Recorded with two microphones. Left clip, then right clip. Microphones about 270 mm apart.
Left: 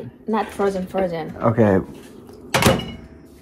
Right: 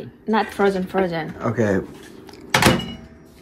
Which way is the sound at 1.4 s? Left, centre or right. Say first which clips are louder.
Left 5 dB; centre.